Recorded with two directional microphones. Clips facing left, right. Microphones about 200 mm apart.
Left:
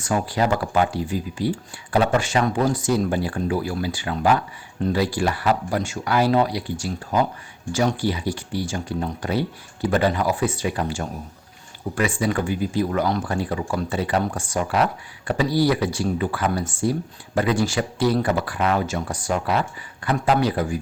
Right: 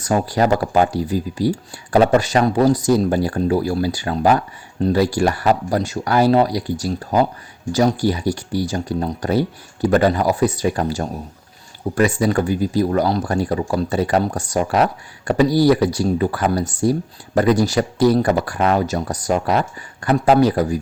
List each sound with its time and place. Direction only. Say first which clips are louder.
0.0 s speech: right 4 dB; 40° right (ahead or behind)